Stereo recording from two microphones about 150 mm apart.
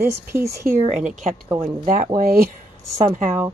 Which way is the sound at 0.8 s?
50° right (ahead or behind).